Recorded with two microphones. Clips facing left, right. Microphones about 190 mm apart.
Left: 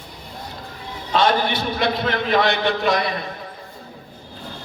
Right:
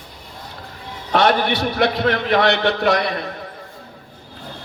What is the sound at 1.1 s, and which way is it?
A man's voice, 65° right (ahead or behind).